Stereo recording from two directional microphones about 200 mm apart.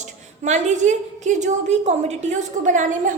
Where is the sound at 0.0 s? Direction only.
35° right (ahead or behind).